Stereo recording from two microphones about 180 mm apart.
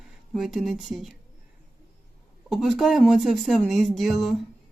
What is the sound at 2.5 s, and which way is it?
Speech, centre (ahead or behind).